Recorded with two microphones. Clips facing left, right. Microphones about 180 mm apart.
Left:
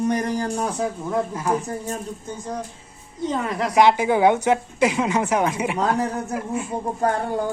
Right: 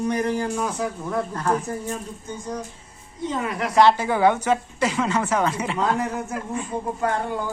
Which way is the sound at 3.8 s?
15° left (ahead or behind).